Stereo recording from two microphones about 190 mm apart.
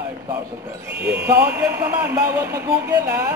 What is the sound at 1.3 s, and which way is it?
Speech, 15° right (ahead or behind).